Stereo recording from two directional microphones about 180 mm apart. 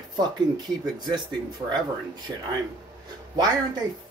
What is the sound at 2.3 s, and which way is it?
Speech, 15° right (ahead or behind).